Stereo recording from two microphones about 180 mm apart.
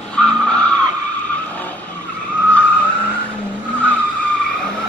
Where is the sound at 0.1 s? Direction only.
5° left (ahead or behind).